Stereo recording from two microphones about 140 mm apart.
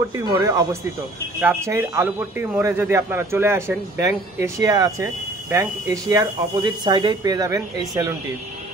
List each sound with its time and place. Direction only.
0.1 s speech: 25° right (ahead or behind)